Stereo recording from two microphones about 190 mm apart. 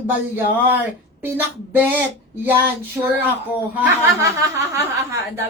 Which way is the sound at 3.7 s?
15° right (ahead or behind).